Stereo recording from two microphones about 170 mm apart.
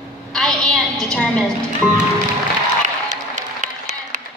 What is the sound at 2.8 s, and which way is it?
Applause, 50° right (ahead or behind).